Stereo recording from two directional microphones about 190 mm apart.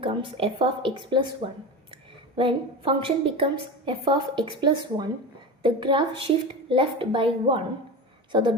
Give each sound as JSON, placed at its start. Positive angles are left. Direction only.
{"t": 0.0, "sound": "a woman's voice", "side_deg": -30}